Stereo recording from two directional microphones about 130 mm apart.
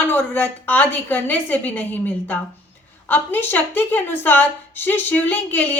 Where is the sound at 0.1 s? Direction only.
15° left (ahead or behind).